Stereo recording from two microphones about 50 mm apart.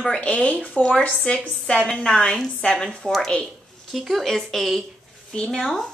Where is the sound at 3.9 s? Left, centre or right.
Centre.